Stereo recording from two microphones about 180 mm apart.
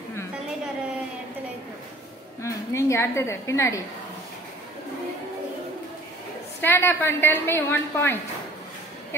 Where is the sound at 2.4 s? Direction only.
15° left (ahead or behind).